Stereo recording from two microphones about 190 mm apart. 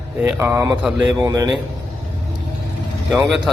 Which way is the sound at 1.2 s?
20° right (ahead or behind).